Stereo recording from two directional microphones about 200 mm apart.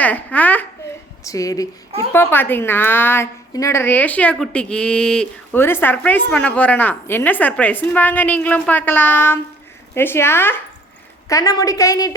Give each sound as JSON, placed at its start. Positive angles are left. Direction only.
{"t": 0.0, "sound": "a woman's voice", "side_deg": 10}